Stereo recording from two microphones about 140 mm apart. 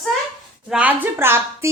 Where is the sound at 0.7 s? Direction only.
10° right (ahead or behind).